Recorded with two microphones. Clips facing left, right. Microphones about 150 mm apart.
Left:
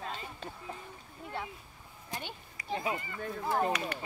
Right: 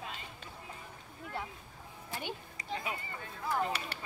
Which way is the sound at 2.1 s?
15° left (ahead or behind).